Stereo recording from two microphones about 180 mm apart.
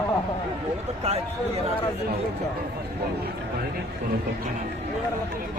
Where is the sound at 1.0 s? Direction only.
35° right (ahead or behind).